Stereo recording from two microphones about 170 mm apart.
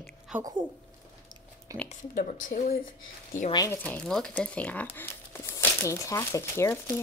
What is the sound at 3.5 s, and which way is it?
Speech, 25° left (ahead or behind).